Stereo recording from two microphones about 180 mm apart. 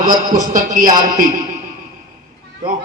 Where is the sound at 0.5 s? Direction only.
45° right (ahead or behind).